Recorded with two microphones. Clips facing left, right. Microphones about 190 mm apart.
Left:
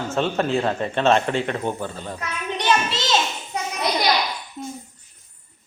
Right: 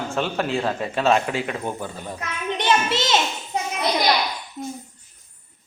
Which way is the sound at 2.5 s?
25° right (ahead or behind).